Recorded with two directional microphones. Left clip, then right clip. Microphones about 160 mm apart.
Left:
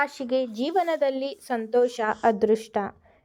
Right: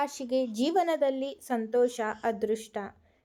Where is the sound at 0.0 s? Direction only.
15° left (ahead or behind).